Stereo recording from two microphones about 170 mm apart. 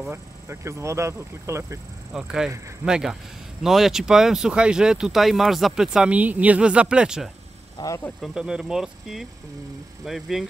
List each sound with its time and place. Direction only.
0.1 s speech: 15° right (ahead or behind)
2.1 s speech: 5° right (ahead or behind)
7.7 s speech: 20° left (ahead or behind)
8.2 s speech: 5° right (ahead or behind)